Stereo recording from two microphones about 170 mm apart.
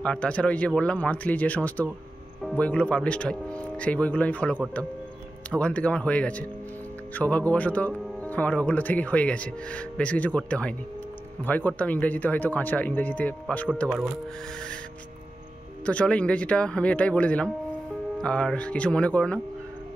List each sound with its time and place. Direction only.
0.0 s speech: 5° left (ahead or behind)
15.8 s speech: 5° left (ahead or behind)